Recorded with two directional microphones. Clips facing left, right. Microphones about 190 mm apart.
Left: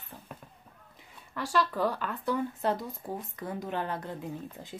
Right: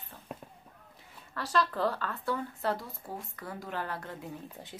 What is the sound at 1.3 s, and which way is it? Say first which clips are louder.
Speech: left 1 dB; 15° left (ahead or behind).